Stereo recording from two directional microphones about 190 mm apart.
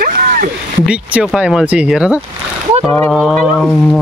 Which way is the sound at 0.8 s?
5° right (ahead or behind).